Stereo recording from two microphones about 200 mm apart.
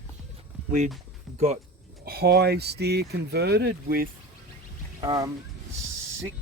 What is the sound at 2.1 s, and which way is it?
Speech, 50° right (ahead or behind).